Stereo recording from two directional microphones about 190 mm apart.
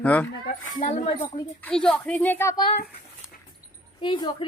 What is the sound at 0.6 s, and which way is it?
Speech, 45° left (ahead or behind).